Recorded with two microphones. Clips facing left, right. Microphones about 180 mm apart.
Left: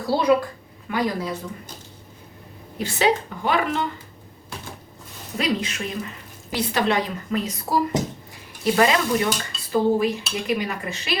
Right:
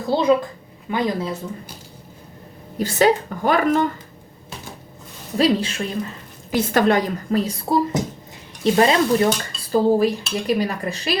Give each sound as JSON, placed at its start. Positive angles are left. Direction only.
{"t": 0.1, "sound": "speech", "side_deg": -20}
{"t": 2.7, "sound": "a woman's voice", "side_deg": -40}
{"t": 5.4, "sound": "speech", "side_deg": -30}
{"t": 6.5, "sound": "a woman's voice", "side_deg": -45}